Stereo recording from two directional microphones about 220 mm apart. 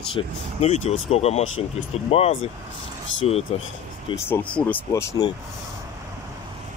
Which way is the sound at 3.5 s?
25° left (ahead or behind).